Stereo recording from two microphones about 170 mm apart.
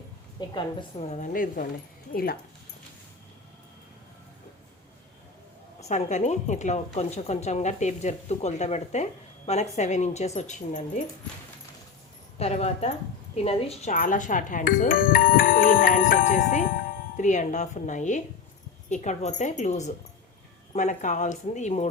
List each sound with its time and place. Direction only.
0.3 s a woman's voice: 30° left (ahead or behind); by 2.4 s 60° left (ahead or behind)
5.8 s speech: 45° left (ahead or behind)
12.4 s a woman's voice: 40° left (ahead or behind)
13.9 s speech: 50° left (ahead or behind)